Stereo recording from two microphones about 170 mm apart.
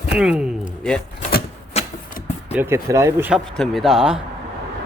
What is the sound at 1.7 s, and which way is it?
Vehicle, 40° left (ahead or behind).